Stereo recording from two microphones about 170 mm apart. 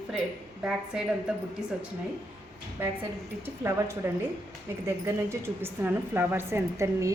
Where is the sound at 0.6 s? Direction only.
5° right (ahead or behind).